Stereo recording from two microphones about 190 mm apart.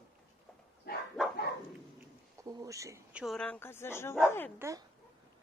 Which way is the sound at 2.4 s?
20° right (ahead or behind).